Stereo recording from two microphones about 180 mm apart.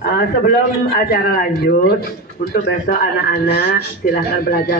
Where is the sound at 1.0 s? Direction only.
55° left (ahead or behind).